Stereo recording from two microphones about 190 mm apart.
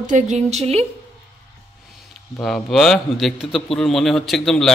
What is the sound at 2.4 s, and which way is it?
A man's voice, centre (ahead or behind).